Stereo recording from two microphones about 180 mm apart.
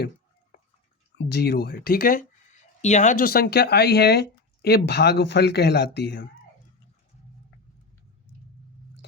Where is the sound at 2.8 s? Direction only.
40° left (ahead or behind); by 6.3 s 65° left (ahead or behind).